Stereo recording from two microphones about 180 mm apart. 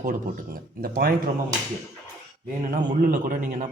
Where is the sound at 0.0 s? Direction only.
50° right (ahead or behind).